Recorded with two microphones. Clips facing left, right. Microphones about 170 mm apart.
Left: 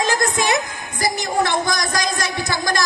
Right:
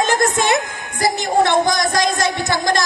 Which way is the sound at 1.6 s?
25° right (ahead or behind).